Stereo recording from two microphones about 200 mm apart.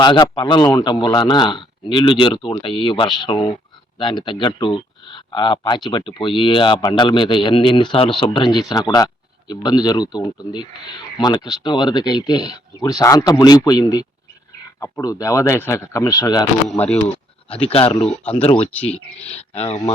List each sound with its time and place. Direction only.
0.0 s speech: 20° left (ahead or behind)
17.7 s speech: 30° left (ahead or behind)
18.0 s speech: 5° left (ahead or behind)
18.3 s speech: 30° left (ahead or behind)